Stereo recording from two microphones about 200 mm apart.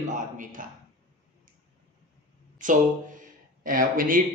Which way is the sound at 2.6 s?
40° right (ahead or behind).